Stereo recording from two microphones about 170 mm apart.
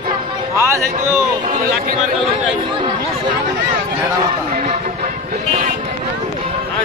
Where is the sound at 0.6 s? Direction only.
15° right (ahead or behind).